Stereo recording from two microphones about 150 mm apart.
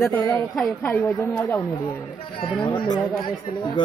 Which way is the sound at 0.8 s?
15° left (ahead or behind).